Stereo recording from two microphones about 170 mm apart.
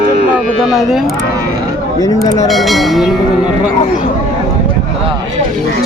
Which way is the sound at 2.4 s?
Centre (ahead or behind).